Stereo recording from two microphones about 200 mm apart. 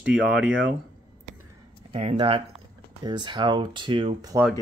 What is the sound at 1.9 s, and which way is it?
Speech, 30° right (ahead or behind).